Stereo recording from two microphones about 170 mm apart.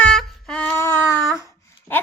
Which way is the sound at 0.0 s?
5° left (ahead or behind).